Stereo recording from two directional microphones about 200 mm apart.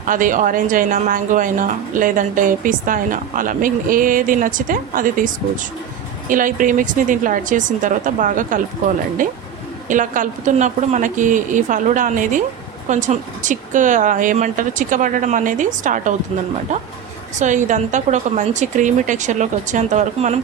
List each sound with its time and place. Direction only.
0.0 s speech: 40° right (ahead or behind)
17.3 s speech: 40° right (ahead or behind)